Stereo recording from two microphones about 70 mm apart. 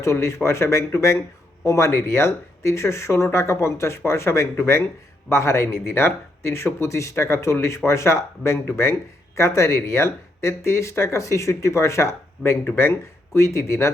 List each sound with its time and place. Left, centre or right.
0.0 s speech: left